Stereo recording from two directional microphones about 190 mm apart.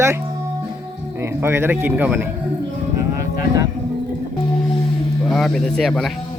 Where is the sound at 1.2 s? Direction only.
15° right (ahead or behind).